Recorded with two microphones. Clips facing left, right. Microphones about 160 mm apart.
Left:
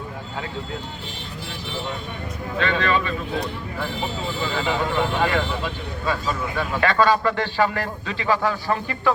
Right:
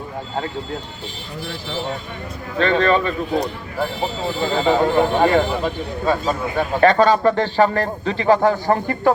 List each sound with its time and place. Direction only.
2.6 s speech: 50° right (ahead or behind)